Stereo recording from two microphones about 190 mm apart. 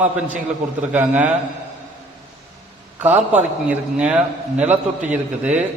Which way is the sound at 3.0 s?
10° right (ahead or behind).